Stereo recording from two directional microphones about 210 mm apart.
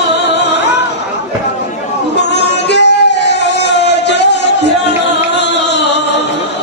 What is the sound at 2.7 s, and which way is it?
Music, 55° left (ahead or behind).